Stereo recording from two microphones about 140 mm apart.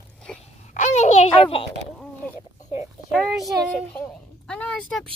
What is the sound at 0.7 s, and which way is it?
Speech, 55° left (ahead or behind).